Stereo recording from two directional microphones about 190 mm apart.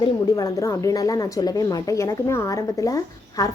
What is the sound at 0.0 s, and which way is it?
A woman's voice, 20° left (ahead or behind).